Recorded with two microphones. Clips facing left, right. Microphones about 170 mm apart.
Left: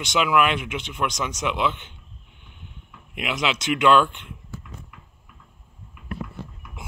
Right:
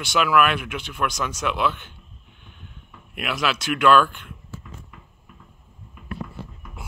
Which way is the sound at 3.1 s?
20° left (ahead or behind).